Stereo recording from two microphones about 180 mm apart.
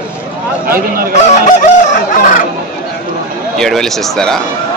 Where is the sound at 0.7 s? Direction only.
55° right (ahead or behind).